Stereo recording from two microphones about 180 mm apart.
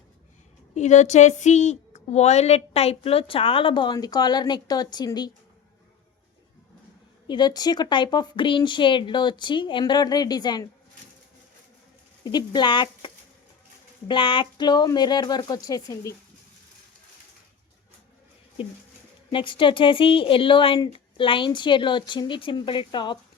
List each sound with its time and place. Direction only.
0.7 s speech: 40° left (ahead or behind); by 5.3 s 25° left (ahead or behind)
7.3 s speech: 25° left (ahead or behind)
12.2 s speech: 25° left (ahead or behind)
14.1 s speech: 30° left (ahead or behind)
19.3 s speech: 30° left (ahead or behind)